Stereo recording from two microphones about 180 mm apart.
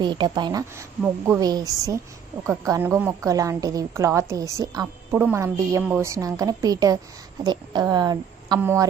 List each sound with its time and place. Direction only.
0.0 s a woman's voice: 25° right (ahead or behind)